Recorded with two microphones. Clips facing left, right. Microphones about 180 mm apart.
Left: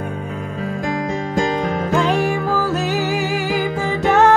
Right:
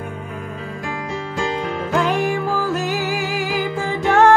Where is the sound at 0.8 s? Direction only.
40° left (ahead or behind).